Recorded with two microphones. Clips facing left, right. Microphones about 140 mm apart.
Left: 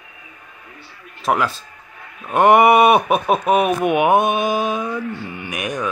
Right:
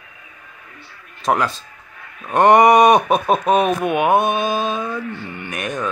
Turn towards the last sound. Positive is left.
turn(degrees=15)  # may be behind; listen again after turning